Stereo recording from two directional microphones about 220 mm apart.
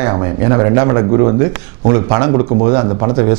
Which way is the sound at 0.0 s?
15° right (ahead or behind).